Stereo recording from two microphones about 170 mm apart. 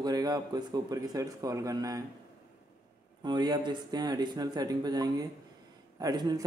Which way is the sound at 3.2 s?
25° right (ahead or behind).